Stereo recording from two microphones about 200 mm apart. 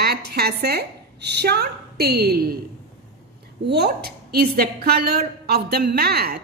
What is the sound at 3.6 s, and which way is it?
A woman's voice, 55° right (ahead or behind).